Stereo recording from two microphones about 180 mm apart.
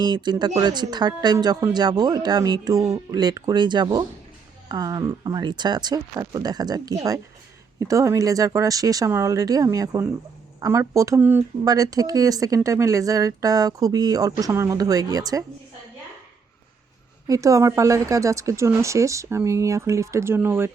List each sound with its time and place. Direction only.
0.0 s speech: 25° right (ahead or behind)
17.2 s speech: 20° right (ahead or behind)